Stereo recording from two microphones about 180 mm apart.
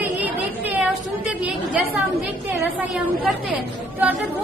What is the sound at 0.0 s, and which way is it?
Chatter, 10° right (ahead or behind).